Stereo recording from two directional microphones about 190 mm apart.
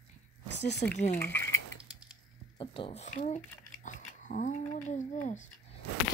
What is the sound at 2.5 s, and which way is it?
Speech, 30° left (ahead or behind).